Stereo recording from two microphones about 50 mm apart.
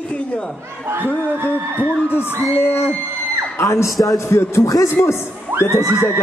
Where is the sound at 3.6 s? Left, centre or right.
Left.